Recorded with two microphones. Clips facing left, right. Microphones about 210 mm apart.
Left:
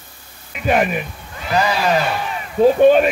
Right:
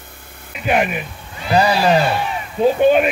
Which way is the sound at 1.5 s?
35° right (ahead or behind).